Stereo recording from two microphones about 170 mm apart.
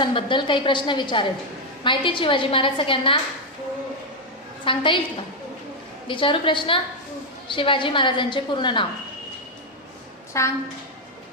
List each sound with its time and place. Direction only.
0.0 s a woman's voice: 30° left (ahead or behind)
4.6 s a woman's voice: 30° left (ahead or behind)
6.1 s a woman's voice: 30° left (ahead or behind)
10.3 s a woman's voice: 20° left (ahead or behind)